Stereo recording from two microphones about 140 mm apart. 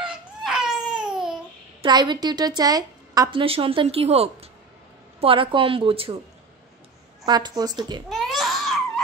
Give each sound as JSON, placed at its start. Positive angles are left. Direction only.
{"t": 0.0, "sound": "a sound", "side_deg": -5}
{"t": 1.8, "sound": "a woman's voice", "side_deg": -30}
{"t": 3.3, "sound": "a woman's voice", "side_deg": -40}
{"t": 7.2, "sound": "a woman's voice", "side_deg": -30}
{"t": 8.1, "sound": "baby cry", "side_deg": 0}